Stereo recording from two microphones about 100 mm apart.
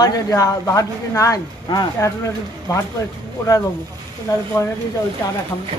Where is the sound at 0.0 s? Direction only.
30° left (ahead or behind).